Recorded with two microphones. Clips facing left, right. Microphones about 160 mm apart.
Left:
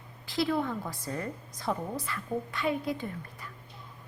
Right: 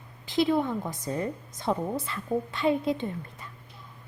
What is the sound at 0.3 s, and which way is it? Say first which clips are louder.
A woman's voice: right 4 dB; 20° right (ahead or behind).